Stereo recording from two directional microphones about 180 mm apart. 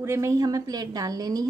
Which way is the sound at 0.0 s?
15° right (ahead or behind).